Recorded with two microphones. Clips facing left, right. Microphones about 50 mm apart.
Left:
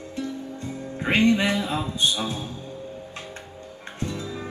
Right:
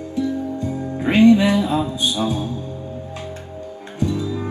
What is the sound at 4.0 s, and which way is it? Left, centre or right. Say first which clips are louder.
Music: right 9 dB; centre.